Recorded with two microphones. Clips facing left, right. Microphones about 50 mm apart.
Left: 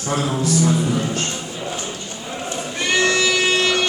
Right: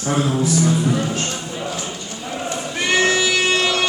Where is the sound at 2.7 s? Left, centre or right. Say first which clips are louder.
Right 1 dB; centre.